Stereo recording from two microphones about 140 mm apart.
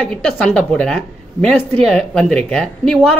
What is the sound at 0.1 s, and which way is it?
Speech, 5° left (ahead or behind).